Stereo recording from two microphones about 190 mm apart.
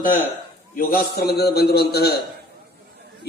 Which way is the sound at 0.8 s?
50° left (ahead or behind).